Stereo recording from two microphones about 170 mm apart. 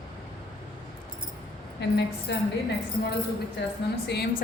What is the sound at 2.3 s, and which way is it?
Speech, 90° left.